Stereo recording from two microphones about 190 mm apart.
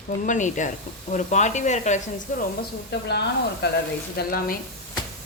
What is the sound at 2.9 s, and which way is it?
Speech, 60° left (ahead or behind).